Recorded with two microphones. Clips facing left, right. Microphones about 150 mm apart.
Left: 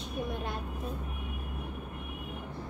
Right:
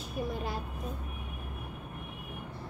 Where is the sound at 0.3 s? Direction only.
Centre (ahead or behind).